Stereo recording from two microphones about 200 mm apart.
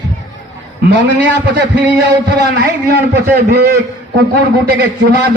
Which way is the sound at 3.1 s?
55° right (ahead or behind).